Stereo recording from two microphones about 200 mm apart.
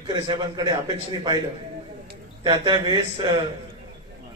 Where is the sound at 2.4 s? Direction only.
25° right (ahead or behind).